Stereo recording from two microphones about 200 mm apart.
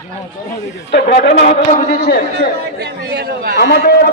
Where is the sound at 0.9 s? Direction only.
55° left (ahead or behind).